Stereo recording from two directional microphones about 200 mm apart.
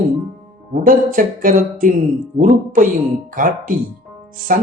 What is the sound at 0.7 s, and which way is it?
Speech, 45° right (ahead or behind).